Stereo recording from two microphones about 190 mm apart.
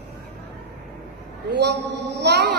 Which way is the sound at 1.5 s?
65° right (ahead or behind).